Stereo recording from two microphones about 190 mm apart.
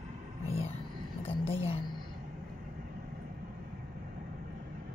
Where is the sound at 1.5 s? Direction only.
30° left (ahead or behind).